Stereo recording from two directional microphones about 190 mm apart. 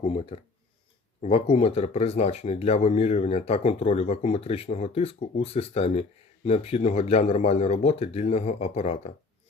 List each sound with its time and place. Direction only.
0.0 s speech: 30° left (ahead or behind)